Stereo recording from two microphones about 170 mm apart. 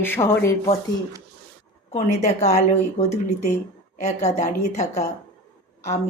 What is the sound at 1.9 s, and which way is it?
A woman's voice, 40° left (ahead or behind).